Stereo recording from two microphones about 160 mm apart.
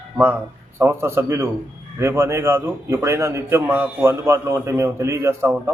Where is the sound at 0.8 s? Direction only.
15° right (ahead or behind).